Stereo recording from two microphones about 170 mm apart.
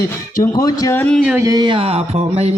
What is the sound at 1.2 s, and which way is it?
Music, 15° right (ahead or behind).